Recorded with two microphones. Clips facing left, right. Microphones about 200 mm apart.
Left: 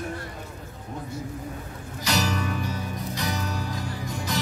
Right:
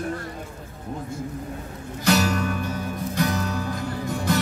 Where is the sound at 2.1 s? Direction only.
55° right (ahead or behind).